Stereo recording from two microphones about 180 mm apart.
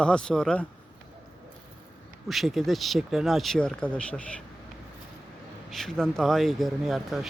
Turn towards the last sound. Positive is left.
turn(degrees=0)  # may be behind; listen again after turning